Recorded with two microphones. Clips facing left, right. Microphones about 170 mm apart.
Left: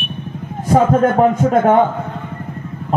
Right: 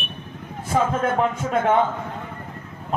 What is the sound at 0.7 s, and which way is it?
A man's voice, 40° left (ahead or behind).